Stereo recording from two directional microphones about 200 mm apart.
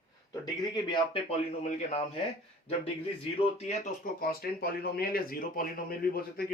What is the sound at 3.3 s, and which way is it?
Speech, 30° left (ahead or behind).